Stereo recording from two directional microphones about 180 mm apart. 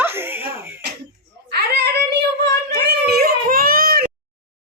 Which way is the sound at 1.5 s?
65° right (ahead or behind).